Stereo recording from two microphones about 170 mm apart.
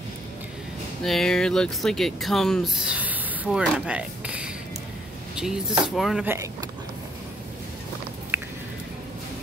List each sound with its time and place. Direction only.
1.0 s speech: centre (ahead or behind)
6.2 s speech: 15° right (ahead or behind)
8.3 s a sound: 15° right (ahead or behind)